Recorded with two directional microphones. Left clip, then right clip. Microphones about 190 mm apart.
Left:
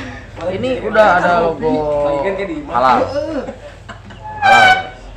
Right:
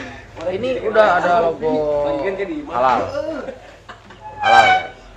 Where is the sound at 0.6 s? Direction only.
10° right (ahead or behind).